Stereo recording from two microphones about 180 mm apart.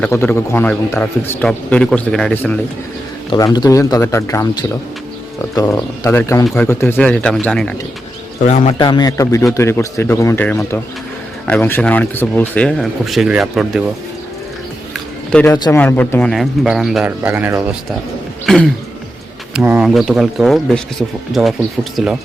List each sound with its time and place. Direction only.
0.0 s a man's voice: 10° left (ahead or behind)
3.2 s speech: 20° left (ahead or behind)
5.5 s a man's voice: 15° left (ahead or behind)
6.4 s a man's voice: 5° left (ahead or behind)
8.4 s speech: 40° left (ahead or behind)
8.8 s a man's voice: 25° left (ahead or behind); by 13.8 s centre (ahead or behind)
15.3 s a man's voice: 10° left (ahead or behind)
15.5 s speech: 20° left (ahead or behind)
15.8 s speech: 10° left (ahead or behind); by 17.7 s 10° right (ahead or behind)
18.4 s speech: centre (ahead or behind)
21.9 s speech: centre (ahead or behind)